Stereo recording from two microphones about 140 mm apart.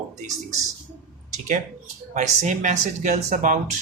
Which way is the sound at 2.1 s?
60° right (ahead or behind).